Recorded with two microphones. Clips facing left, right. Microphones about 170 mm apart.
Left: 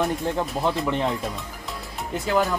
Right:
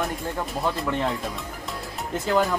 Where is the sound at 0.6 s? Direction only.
Centre (ahead or behind).